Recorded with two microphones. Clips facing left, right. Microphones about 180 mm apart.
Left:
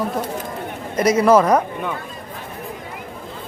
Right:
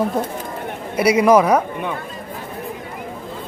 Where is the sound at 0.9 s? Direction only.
10° right (ahead or behind).